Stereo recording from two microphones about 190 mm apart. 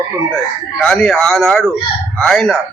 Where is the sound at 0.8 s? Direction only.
5° left (ahead or behind).